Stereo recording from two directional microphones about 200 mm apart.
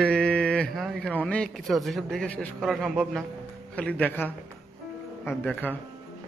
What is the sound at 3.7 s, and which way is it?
A man's voice, 5° left (ahead or behind).